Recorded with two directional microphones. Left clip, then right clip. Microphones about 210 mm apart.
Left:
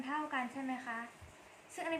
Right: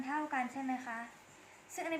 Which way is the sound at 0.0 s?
15° right (ahead or behind).